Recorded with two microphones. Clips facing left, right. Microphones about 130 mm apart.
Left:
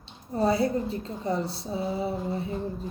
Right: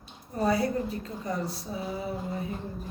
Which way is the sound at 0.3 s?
30° left (ahead or behind).